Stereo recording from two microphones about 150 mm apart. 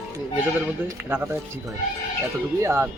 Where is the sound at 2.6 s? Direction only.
15° right (ahead or behind).